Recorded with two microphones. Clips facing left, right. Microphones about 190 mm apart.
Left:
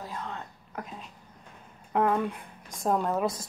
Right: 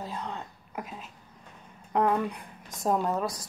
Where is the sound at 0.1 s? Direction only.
15° right (ahead or behind).